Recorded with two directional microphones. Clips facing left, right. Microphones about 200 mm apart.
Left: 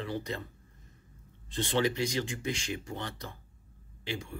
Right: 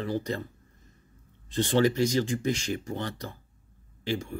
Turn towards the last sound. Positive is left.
turn(degrees=-40)  # may be behind; listen again after turning